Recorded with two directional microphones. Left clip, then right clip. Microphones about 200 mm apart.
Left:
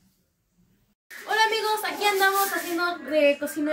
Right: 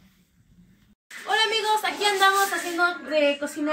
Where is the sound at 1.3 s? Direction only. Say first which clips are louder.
Right 1 dB; centre (ahead or behind).